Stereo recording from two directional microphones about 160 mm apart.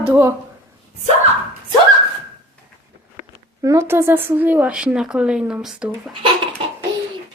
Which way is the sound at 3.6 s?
15° right (ahead or behind).